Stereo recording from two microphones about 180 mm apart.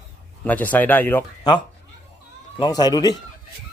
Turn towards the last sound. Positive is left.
turn(degrees=20)  # may be behind; listen again after turning